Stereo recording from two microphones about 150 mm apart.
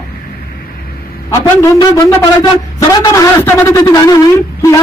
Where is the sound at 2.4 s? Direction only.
25° left (ahead or behind).